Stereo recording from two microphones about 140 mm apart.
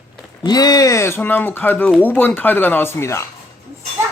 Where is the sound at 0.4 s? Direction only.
30° left (ahead or behind).